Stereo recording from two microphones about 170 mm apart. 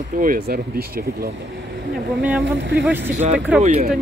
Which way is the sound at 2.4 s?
90° right.